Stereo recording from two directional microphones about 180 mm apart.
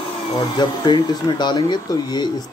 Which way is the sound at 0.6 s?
25° left (ahead or behind).